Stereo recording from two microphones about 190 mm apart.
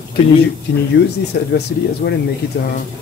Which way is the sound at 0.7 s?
60° left (ahead or behind).